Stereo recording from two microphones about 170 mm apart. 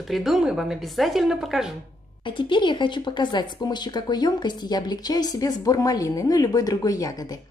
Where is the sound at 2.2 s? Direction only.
30° left (ahead or behind).